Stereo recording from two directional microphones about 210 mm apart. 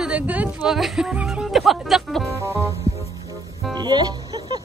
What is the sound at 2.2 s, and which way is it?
Music, 15° right (ahead or behind).